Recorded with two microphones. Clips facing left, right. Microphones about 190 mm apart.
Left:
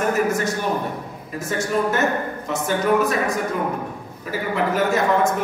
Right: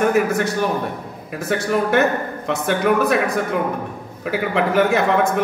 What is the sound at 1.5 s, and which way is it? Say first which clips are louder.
A man's voice: right 3 dB; 60° right (ahead or behind).